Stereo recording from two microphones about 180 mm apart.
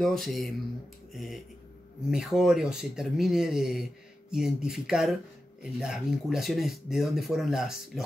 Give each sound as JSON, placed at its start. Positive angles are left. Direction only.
{"t": 0.0, "sound": "speech", "side_deg": 0}